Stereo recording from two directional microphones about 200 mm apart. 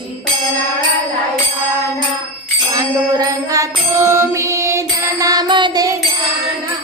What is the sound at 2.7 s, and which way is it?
Music, 15° right (ahead or behind).